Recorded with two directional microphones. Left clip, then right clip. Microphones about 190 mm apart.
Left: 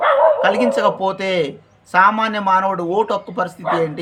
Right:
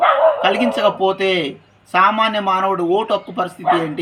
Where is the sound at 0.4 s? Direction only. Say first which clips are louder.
Even; 25° left (ahead or behind).